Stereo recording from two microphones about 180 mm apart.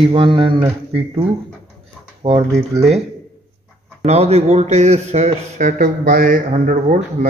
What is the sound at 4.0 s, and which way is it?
Speech, 35° right (ahead or behind).